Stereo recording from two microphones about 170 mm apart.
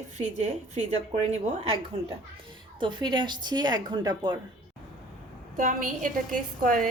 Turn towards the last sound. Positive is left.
turn(degrees=-55)  # may be behind; listen again after turning